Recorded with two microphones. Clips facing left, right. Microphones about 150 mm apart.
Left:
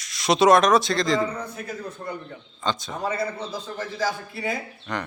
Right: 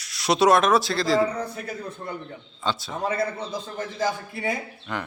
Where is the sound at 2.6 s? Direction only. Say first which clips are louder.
Left 1 dB; 5° right (ahead or behind).